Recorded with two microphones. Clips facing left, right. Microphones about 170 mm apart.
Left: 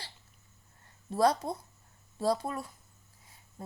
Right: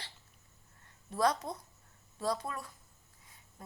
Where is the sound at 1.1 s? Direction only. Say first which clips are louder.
Left 4 dB; 30° left (ahead or behind).